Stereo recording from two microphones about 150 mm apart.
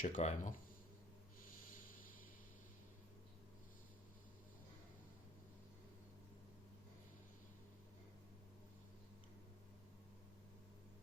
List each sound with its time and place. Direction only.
0.0 s speech: 55° left (ahead or behind)